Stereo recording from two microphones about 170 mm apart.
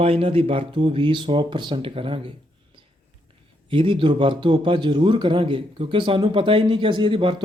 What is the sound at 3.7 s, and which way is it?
A man's voice, 30° right (ahead or behind).